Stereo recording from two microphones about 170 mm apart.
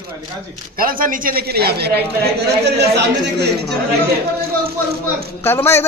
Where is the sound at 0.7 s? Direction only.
55° right (ahead or behind).